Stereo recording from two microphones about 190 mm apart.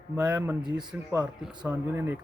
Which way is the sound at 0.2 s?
10° right (ahead or behind).